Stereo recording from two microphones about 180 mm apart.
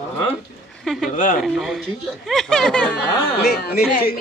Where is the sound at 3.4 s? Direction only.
60° left (ahead or behind).